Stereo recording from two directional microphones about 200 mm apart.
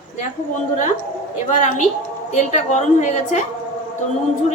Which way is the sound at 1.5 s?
35° left (ahead or behind).